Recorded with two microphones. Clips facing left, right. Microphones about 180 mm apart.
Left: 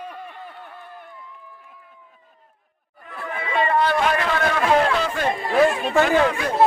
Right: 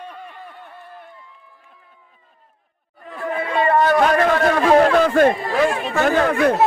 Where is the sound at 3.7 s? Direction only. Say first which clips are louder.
Right 6 dB; 45° right (ahead or behind).